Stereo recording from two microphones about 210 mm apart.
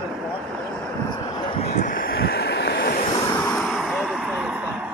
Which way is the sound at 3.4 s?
Centre (ahead or behind).